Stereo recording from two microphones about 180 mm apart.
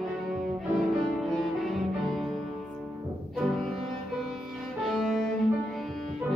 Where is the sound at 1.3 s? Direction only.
5° left (ahead or behind).